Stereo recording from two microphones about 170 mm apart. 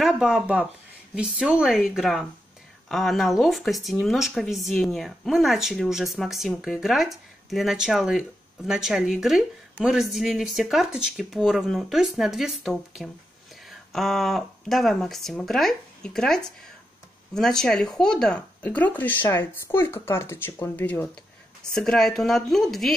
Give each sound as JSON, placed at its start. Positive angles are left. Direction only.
{"t": 0.0, "sound": "speech", "side_deg": -5}